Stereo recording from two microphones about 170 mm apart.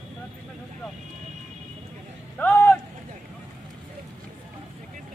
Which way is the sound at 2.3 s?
10° left (ahead or behind).